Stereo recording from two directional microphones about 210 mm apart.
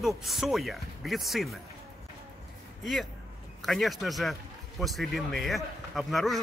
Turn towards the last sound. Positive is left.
turn(degrees=0)  # may be behind; listen again after turning